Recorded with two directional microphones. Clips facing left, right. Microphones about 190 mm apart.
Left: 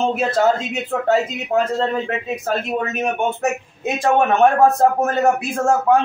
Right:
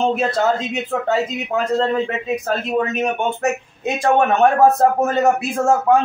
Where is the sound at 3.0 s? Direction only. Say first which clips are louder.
Even; 5° left (ahead or behind).